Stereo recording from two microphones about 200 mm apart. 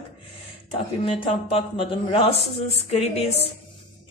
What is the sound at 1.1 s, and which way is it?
Speech, 25° left (ahead or behind).